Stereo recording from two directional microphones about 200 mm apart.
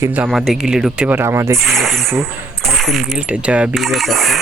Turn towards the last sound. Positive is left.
turn(degrees=0)  # may be behind; listen again after turning